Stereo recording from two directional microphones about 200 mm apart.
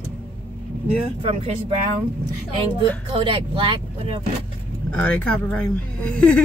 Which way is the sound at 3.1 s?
25° right (ahead or behind).